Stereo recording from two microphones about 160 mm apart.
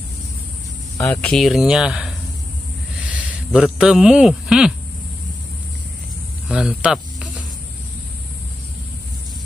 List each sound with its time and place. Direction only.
0.9 s speech: 20° left (ahead or behind)
1.3 s a man's voice: centre (ahead or behind)
6.5 s snake: 5° right (ahead or behind)